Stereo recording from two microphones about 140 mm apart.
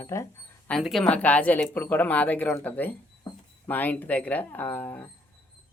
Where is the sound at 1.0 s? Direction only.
10° left (ahead or behind).